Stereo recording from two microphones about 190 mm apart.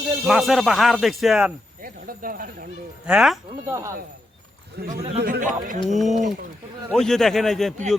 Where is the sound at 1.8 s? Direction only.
50° right (ahead or behind).